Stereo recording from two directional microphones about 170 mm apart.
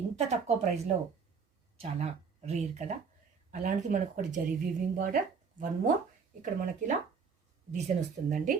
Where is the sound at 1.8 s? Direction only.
40° right (ahead or behind); by 5.2 s 55° right (ahead or behind).